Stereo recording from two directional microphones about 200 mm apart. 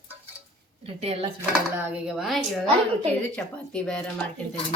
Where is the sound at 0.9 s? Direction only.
30° right (ahead or behind).